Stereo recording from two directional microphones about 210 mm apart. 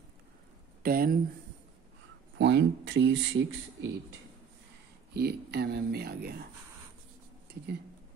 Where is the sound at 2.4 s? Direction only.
55° right (ahead or behind).